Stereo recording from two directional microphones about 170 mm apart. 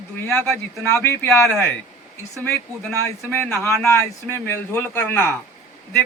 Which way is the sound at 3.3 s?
15° left (ahead or behind).